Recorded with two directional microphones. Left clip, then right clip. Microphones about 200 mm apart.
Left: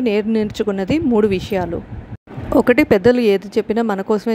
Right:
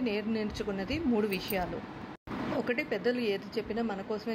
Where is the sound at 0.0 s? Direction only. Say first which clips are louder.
Left 15 dB; 55° left (ahead or behind).